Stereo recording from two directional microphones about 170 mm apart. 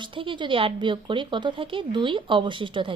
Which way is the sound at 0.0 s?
30° right (ahead or behind).